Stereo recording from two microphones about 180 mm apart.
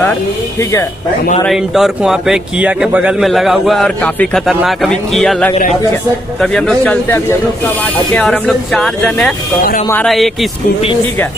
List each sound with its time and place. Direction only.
0.6 s speech: 15° left (ahead or behind)
1.5 s a man's voice: centre (ahead or behind)